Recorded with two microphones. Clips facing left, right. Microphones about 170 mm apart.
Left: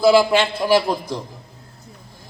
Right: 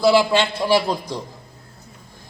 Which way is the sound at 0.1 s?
10° left (ahead or behind).